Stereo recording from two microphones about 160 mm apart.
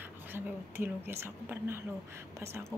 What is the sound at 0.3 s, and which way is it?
A woman's voice, 10° right (ahead or behind).